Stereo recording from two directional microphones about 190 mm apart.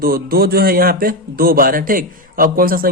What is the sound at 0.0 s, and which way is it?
A man's voice, 50° right (ahead or behind).